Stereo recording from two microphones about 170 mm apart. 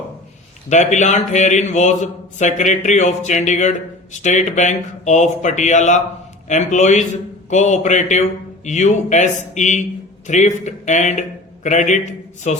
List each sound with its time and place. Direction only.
0.7 s a man's voice: 45° left (ahead or behind)